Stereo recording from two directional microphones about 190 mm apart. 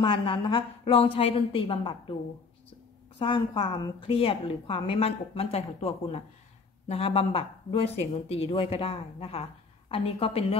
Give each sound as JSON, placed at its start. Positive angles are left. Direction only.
{"t": 0.0, "sound": "a woman's voice", "side_deg": 25}
{"t": 3.2, "sound": "a woman's voice", "side_deg": 30}